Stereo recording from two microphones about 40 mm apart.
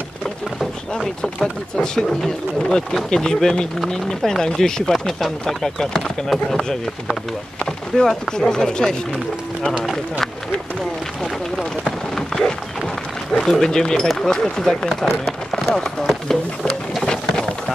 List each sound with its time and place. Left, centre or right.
1.8 s speech: centre
8.0 s speech: centre
9.8 s a man's voice: centre
11.8 s run: centre
13.4 s speech: centre
15.0 s run: centre
17.0 s a sound: centre